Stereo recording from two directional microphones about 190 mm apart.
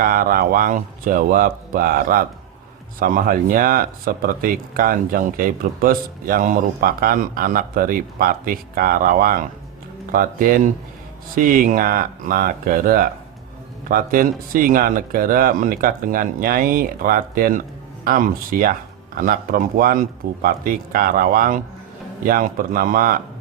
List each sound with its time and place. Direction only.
0.0 s speech: 45° right (ahead or behind)